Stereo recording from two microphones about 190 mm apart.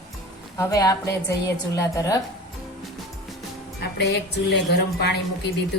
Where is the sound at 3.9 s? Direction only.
60° left (ahead or behind).